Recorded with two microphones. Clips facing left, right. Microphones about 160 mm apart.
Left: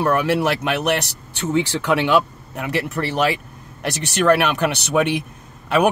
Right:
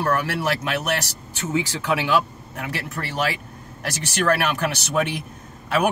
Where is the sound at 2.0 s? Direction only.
65° left (ahead or behind).